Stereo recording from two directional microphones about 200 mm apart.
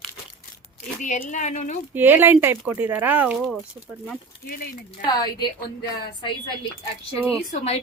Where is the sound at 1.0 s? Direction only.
40° left (ahead or behind).